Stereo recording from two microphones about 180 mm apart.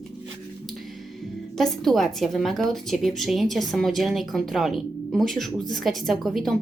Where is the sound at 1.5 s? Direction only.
Centre (ahead or behind).